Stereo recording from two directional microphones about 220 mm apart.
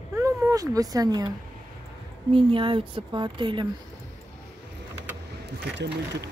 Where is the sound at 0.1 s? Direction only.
15° right (ahead or behind).